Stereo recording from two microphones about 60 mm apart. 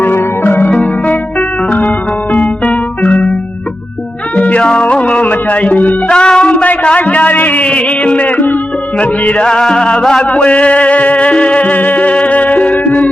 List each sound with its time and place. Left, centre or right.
0.0 s music: left
0.7 s music: left
4.4 s music: left
6.1 s a man's voice: centre
9.0 s music: left